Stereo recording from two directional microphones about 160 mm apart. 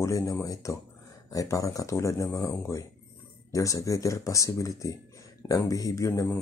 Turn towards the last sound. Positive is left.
turn(degrees=20)  # may be behind; listen again after turning